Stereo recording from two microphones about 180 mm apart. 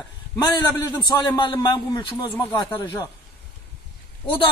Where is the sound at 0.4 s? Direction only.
25° left (ahead or behind).